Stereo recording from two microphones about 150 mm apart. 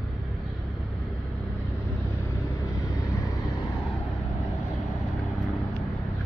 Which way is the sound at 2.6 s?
20° left (ahead or behind).